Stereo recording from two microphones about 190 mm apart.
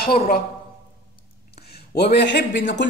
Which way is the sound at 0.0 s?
50° left (ahead or behind).